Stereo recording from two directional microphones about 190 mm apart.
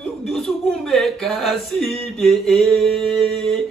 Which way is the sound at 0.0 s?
Centre (ahead or behind).